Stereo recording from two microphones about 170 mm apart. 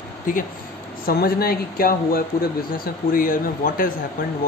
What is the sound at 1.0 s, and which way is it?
Speech, 60° left (ahead or behind).